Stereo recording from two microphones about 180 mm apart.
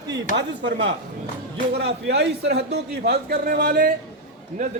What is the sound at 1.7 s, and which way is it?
A man's voice, 70° right (ahead or behind).